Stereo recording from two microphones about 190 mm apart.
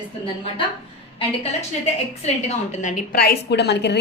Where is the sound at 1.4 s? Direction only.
35° left (ahead or behind).